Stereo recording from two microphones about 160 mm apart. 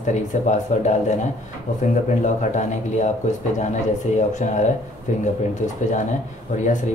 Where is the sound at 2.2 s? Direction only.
50° left (ahead or behind).